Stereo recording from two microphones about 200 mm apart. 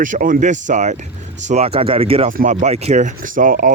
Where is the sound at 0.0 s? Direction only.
40° right (ahead or behind).